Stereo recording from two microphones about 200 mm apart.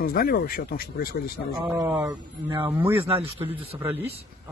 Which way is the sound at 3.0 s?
30° right (ahead or behind).